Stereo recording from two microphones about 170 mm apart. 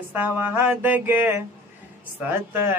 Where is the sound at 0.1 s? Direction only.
10° right (ahead or behind).